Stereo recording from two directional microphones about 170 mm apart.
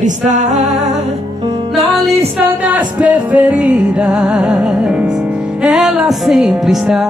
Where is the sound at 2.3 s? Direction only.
10° right (ahead or behind).